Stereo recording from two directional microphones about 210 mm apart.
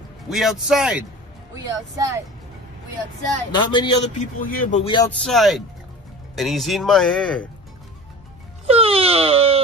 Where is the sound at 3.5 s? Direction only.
20° left (ahead or behind).